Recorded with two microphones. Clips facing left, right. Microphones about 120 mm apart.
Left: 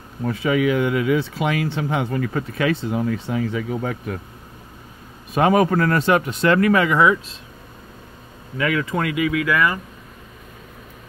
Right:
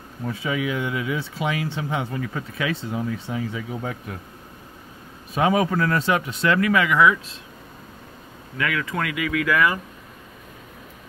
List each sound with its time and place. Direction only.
0.3 s speech: 60° left (ahead or behind)
5.3 s speech: 55° left (ahead or behind); by 7.2 s 30° left (ahead or behind)
8.5 s speech: 30° left (ahead or behind)
9.3 s speech: 5° left (ahead or behind)